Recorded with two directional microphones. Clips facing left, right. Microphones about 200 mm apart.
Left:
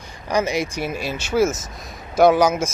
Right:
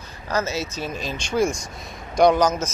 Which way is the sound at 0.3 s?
15° left (ahead or behind).